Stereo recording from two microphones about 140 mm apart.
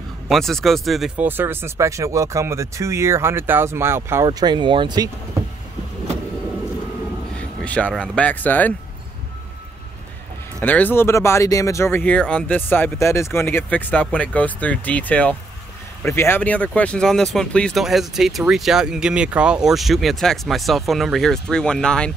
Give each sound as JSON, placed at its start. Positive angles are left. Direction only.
{"t": 0.3, "sound": "speech", "side_deg": 0}
{"t": 7.3, "sound": "speech", "side_deg": 10}
{"t": 10.6, "sound": "speech", "side_deg": 15}